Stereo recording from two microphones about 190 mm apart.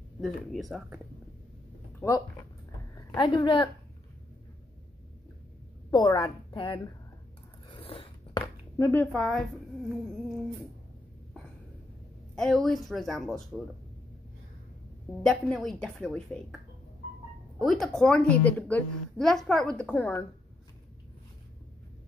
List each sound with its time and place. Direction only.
0.2 s a woman's voice: centre (ahead or behind)
2.0 s a woman's voice: 15° left (ahead or behind)
5.9 s a woman's voice: 20° left (ahead or behind)
7.6 s biting: 30° left (ahead or behind)
8.4 s a sound: 15° left (ahead or behind)
12.4 s a woman's voice: centre (ahead or behind)
15.2 s a woman's voice: centre (ahead or behind)
17.6 s a woman's voice: centre (ahead or behind)